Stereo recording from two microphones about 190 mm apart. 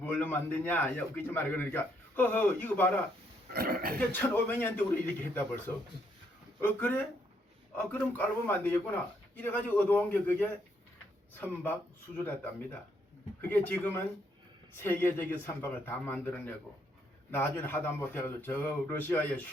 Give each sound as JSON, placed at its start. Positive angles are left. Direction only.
{"t": 0.0, "sound": "a man's voice", "side_deg": 10}
{"t": 3.5, "sound": "speech", "side_deg": -50}
{"t": 3.9, "sound": "a man's voice", "side_deg": 10}